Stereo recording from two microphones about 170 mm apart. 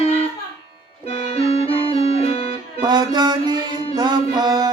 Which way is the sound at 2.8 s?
25° right (ahead or behind).